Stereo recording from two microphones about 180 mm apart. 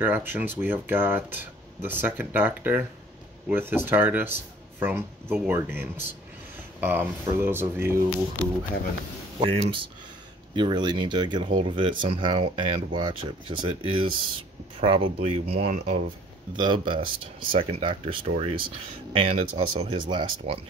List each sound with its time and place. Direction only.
0.0 s speech: 10° right (ahead or behind)
9.4 s speech: 30° right (ahead or behind)
16.5 s speech: 25° right (ahead or behind)